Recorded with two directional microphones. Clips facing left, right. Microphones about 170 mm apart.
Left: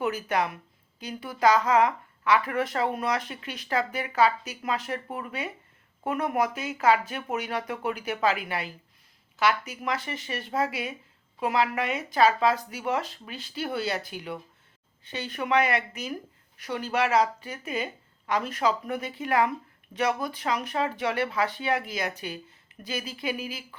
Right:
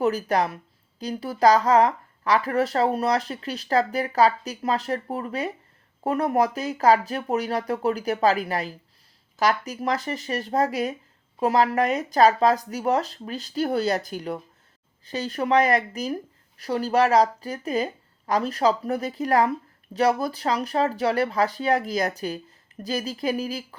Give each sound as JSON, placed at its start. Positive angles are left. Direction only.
{"t": 0.0, "sound": "a woman's voice", "side_deg": -35}